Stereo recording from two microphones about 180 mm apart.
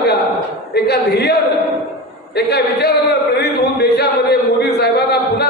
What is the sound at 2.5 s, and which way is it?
Speech, 65° left (ahead or behind).